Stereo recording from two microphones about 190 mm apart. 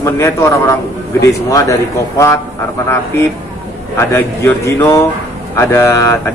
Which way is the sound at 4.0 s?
15° left (ahead or behind).